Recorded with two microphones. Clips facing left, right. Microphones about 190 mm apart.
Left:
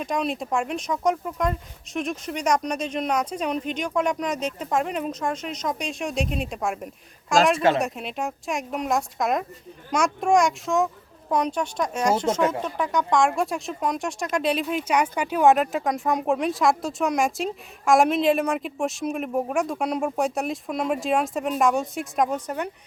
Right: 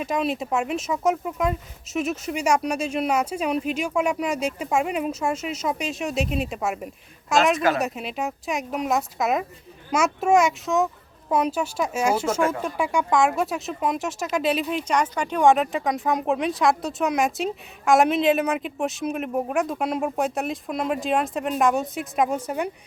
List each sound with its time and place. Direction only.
0.0 s speech: 5° right (ahead or behind)
7.5 s speech: 25° left (ahead or behind)
7.8 s speech: centre (ahead or behind)
14.8 s speech: 10° left (ahead or behind); by 22.7 s 10° right (ahead or behind)